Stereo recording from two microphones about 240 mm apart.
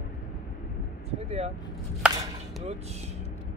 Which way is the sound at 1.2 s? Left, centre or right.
Right.